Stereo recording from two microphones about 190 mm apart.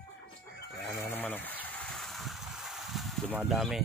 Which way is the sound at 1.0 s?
10° left (ahead or behind).